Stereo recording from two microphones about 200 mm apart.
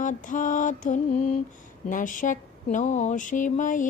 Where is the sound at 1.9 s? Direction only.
40° left (ahead or behind).